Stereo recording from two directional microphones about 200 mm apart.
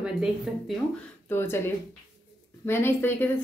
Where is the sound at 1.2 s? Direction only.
10° left (ahead or behind).